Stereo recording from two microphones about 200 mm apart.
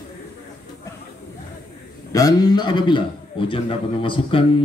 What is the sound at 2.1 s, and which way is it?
A man's voice, 20° left (ahead or behind).